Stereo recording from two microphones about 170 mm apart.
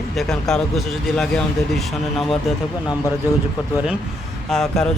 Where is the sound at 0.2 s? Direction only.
5° left (ahead or behind).